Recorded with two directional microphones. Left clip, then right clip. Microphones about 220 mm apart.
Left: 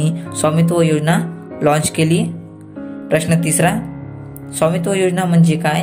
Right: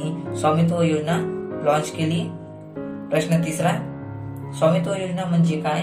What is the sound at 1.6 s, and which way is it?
Speech, 45° left (ahead or behind).